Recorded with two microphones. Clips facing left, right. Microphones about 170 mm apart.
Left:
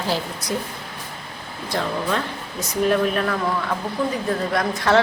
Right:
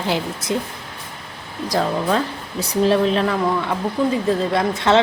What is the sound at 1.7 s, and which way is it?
Speech, 35° right (ahead or behind).